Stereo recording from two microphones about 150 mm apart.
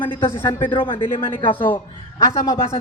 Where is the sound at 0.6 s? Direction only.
35° left (ahead or behind).